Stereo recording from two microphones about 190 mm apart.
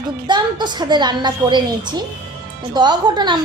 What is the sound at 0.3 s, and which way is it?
A woman's voice, 25° right (ahead or behind).